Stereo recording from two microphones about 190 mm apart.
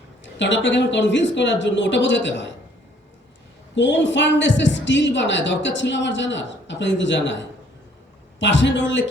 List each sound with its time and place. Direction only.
0.3 s a woman's voice: 70° left (ahead or behind)
3.8 s a woman's voice: 70° left (ahead or behind)